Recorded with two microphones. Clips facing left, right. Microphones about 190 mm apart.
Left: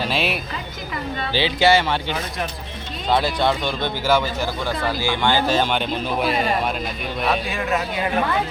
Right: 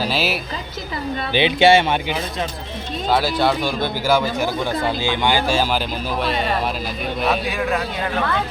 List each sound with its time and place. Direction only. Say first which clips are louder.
0.0 s a woman's voice: right 1 dB; 5° right (ahead or behind)
1.3 s speech: right 3 dB; 20° right (ahead or behind)
3.1 s speech: right 1 dB; 5° right (ahead or behind)